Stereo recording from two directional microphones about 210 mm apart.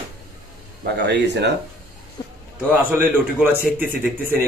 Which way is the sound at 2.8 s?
10° right (ahead or behind).